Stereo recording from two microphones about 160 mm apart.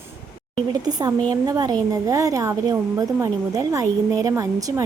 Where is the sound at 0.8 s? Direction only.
25° right (ahead or behind).